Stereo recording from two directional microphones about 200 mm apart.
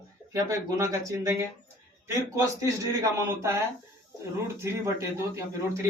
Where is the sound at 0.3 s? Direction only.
15° right (ahead or behind).